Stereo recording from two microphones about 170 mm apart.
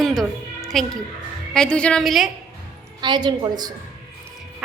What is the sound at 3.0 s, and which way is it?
Speech, 25° right (ahead or behind).